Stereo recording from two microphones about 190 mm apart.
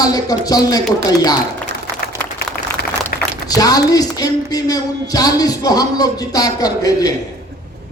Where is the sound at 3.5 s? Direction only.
20° left (ahead or behind).